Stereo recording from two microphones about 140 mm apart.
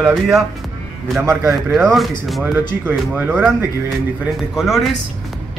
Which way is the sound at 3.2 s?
10° right (ahead or behind).